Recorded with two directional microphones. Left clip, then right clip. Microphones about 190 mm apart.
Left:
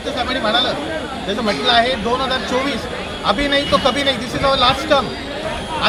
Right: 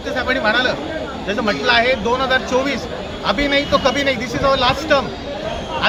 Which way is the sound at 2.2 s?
Centre (ahead or behind).